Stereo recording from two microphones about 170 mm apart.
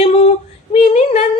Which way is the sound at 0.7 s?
40° left (ahead or behind).